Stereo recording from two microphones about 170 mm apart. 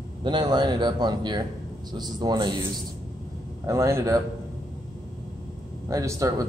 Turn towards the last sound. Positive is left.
turn(degrees=-20)  # may be behind; listen again after turning